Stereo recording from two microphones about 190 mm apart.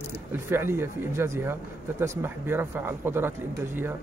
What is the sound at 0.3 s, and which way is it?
Speech, 10° right (ahead or behind).